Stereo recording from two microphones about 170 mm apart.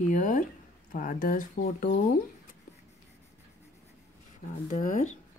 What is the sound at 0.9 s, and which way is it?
Speech, 50° left (ahead or behind).